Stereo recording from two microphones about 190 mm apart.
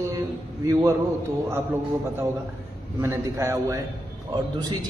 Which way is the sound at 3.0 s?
15° right (ahead or behind).